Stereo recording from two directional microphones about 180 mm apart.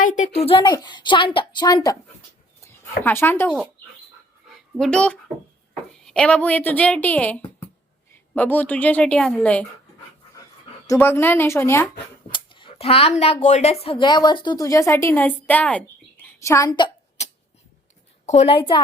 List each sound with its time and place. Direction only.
0.3 s a woman's voice: 30° left (ahead or behind); by 3.5 s 10° left (ahead or behind)
4.4 s a sound: centre (ahead or behind)
5.9 s a woman's voice: 5° left (ahead or behind)
10.8 s a woman's voice: 15° left (ahead or behind)
12.3 s speech: 25° left (ahead or behind)
17.2 s a sound: 40° left (ahead or behind)
18.3 s a woman's voice: 35° left (ahead or behind)